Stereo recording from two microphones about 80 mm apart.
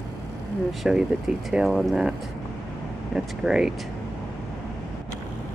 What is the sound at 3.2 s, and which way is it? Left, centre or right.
Speech, centre.